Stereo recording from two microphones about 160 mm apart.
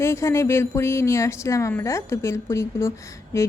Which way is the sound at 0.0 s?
15° left (ahead or behind).